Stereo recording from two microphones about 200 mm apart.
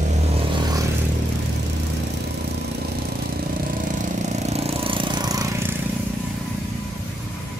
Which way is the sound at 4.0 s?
35° right (ahead or behind).